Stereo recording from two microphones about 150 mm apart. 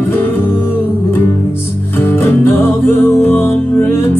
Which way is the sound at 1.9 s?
15° left (ahead or behind).